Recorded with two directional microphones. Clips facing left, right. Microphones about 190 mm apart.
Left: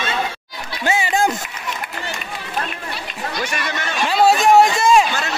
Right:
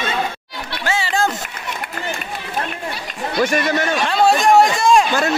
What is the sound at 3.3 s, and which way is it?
Speech, 50° right (ahead or behind).